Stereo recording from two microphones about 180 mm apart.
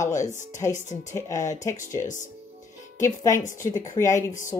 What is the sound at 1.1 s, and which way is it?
Speech, 15° left (ahead or behind).